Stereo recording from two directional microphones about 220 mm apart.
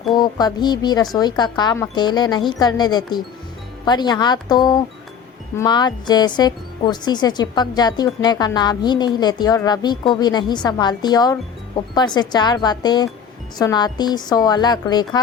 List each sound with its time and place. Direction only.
0.1 s speech: 20° left (ahead or behind)